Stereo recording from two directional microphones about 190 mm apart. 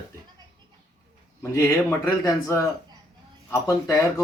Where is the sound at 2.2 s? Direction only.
15° left (ahead or behind).